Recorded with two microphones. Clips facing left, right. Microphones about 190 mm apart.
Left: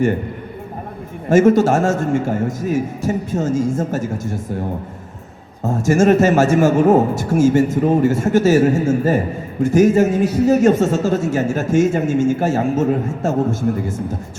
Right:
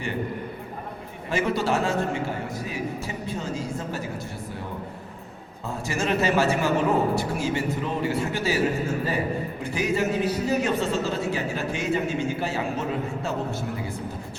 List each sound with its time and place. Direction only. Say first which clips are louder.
1.3 s a man's voice: left 12 dB; 45° left (ahead or behind)
5.6 s a man's voice: left 13 dB; 50° left (ahead or behind)